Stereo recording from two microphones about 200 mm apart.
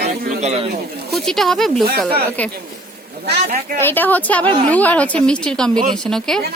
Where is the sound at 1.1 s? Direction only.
Centre (ahead or behind).